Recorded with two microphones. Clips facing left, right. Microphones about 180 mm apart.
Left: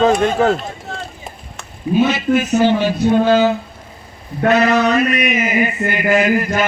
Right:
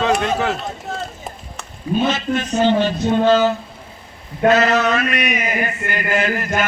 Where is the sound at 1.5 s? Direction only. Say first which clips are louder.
Left 5 dB; 10° left (ahead or behind).